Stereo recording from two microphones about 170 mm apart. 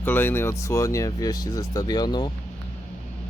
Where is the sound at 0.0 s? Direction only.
10° left (ahead or behind).